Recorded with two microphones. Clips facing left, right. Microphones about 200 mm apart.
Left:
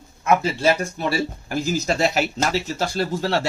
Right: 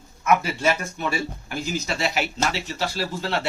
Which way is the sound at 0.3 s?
30° left (ahead or behind).